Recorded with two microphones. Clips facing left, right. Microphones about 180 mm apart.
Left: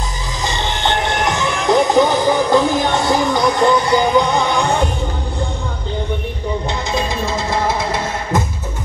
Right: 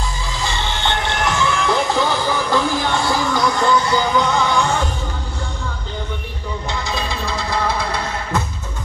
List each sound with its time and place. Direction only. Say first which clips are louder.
0.4 s music: left 3 dB; 20° left (ahead or behind)
6.9 s music: left 6 dB; 20° left (ahead or behind)